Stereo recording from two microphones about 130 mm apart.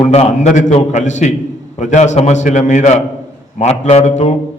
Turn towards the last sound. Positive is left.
turn(degrees=65)  # may be behind; listen again after turning